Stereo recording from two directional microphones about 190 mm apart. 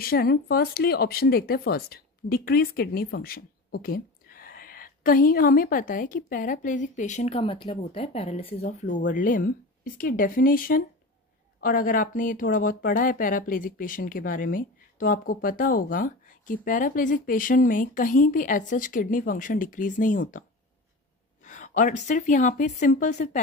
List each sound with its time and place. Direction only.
0.0 s a woman's voice: 50° left (ahead or behind)